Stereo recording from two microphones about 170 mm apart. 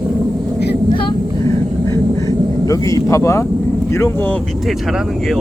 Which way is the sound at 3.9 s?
15° left (ahead or behind).